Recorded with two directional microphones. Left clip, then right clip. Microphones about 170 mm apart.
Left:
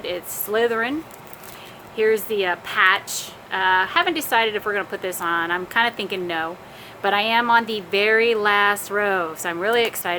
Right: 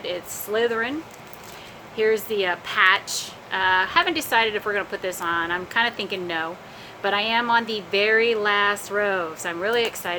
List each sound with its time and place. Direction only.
0.0 s a woman's voice: 15° left (ahead or behind)
2.0 s a woman's voice: 10° left (ahead or behind)